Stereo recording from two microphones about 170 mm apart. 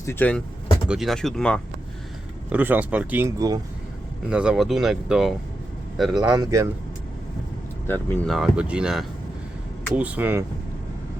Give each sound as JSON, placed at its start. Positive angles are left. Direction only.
{"t": 0.0, "sound": "speech", "side_deg": 10}
{"t": 2.5, "sound": "speech", "side_deg": -10}
{"t": 4.3, "sound": "speech", "side_deg": -5}
{"t": 6.3, "sound": "speech", "side_deg": -20}
{"t": 7.9, "sound": "speech", "side_deg": 10}
{"t": 8.3, "sound": "speech", "side_deg": -5}